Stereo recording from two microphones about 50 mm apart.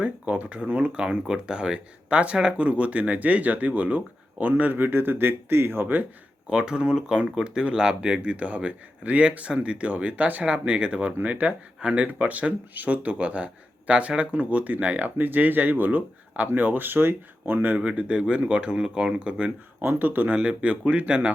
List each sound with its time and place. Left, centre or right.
0.0 s speech: right
6.5 s speech: centre
8.2 s speech: right
17.7 s speech: right
19.8 s speech: right
20.3 s speech: right